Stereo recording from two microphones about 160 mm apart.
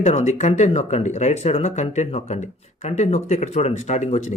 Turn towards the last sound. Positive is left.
turn(degrees=45)  # may be behind; listen again after turning